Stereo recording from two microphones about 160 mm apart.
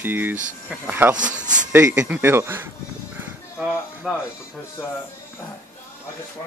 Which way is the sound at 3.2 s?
10° right (ahead or behind).